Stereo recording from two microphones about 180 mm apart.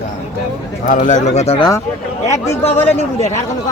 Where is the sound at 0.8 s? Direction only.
45° left (ahead or behind).